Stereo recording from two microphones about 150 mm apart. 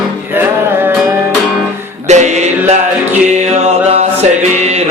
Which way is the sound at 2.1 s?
50° right (ahead or behind).